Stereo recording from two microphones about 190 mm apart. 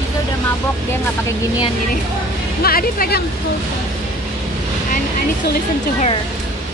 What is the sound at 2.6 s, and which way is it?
Speech, 50° left (ahead or behind).